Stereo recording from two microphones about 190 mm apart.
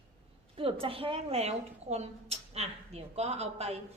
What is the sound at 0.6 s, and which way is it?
A woman's voice, 30° right (ahead or behind).